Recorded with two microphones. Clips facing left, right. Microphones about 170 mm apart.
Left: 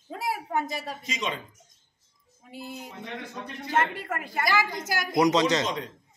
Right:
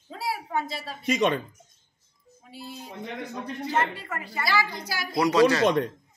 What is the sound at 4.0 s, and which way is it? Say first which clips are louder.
A woman's voice: left 3 dB; 55° left (ahead or behind).